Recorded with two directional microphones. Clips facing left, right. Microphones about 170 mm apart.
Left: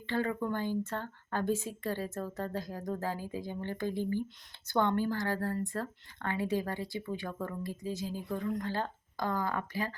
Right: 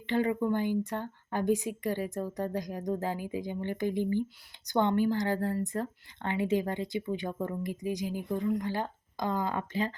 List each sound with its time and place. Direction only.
0.1 s speech: 15° right (ahead or behind)